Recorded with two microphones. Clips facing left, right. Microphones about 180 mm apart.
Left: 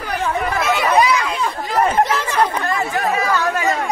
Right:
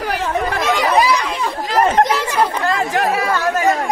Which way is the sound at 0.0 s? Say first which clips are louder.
Right 1 dB; 90° right.